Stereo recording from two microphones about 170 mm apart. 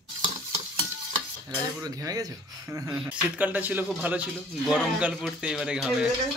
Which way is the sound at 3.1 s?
10° right (ahead or behind).